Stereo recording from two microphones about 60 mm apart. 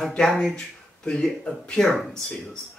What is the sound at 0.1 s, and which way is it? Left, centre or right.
Speech, centre.